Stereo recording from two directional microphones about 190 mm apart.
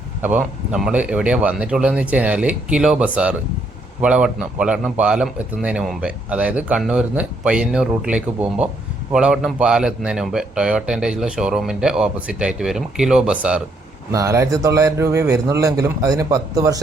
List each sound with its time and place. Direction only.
0.2 s speech: 10° right (ahead or behind)
14.1 s speech: 15° right (ahead or behind)